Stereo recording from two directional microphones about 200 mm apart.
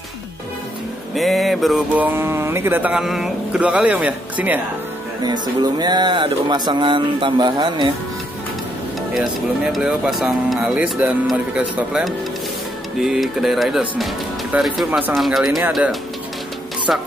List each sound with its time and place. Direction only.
1.1 s speech: centre (ahead or behind)
5.2 s speech: 20° right (ahead or behind)
9.1 s speech: centre (ahead or behind)